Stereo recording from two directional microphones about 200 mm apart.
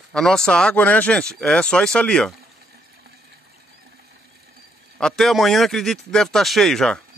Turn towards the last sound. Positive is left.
turn(degrees=0)  # may be behind; listen again after turning